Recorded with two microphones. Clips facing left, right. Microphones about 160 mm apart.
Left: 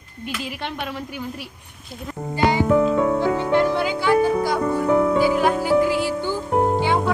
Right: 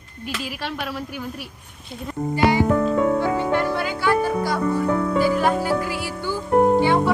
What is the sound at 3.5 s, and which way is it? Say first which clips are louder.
Music: left 3 dB; 15° left (ahead or behind).